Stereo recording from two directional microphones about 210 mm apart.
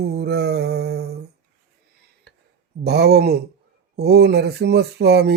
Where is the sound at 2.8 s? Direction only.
50° right (ahead or behind).